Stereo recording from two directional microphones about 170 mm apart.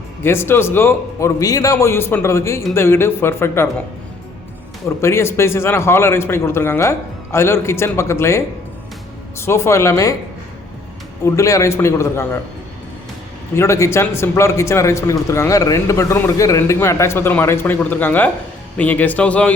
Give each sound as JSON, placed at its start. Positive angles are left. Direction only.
{"t": 0.2, "sound": "a man's voice", "side_deg": 15}
{"t": 4.9, "sound": "a man's voice", "side_deg": 15}
{"t": 9.4, "sound": "a man's voice", "side_deg": 15}
{"t": 11.3, "sound": "a man's voice", "side_deg": 20}
{"t": 13.6, "sound": "a man's voice", "side_deg": 15}